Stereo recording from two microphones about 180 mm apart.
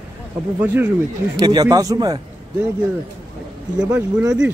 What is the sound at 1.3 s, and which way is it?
Speech, 20° right (ahead or behind).